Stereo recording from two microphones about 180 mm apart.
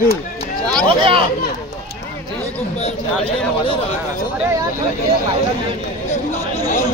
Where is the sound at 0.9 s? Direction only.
30° right (ahead or behind).